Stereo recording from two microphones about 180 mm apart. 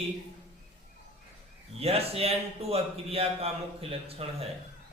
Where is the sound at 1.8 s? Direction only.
35° right (ahead or behind).